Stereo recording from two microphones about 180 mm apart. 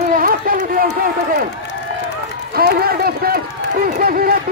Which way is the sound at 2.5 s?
60° right (ahead or behind).